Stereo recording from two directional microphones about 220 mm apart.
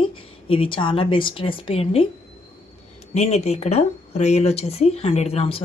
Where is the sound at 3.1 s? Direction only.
30° left (ahead or behind).